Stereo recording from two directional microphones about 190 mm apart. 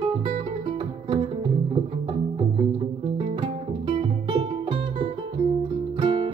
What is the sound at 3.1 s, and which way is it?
Music, 30° right (ahead or behind).